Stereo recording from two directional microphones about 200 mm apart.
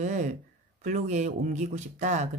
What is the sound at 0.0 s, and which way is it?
Speech, 40° right (ahead or behind).